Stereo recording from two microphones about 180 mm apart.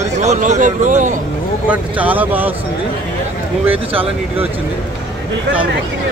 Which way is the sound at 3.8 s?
10° right (ahead or behind).